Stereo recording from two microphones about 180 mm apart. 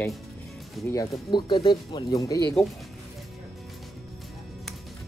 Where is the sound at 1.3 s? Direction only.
25° left (ahead or behind).